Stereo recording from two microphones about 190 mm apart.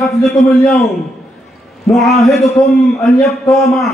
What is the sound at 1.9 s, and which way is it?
Speech, centre (ahead or behind).